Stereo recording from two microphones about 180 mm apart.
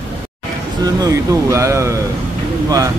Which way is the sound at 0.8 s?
20° right (ahead or behind).